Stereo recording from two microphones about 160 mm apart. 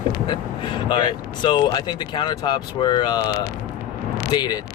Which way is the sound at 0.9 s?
30° left (ahead or behind).